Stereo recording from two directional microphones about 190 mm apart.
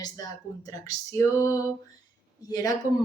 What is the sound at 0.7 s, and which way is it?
A woman's voice, 15° left (ahead or behind).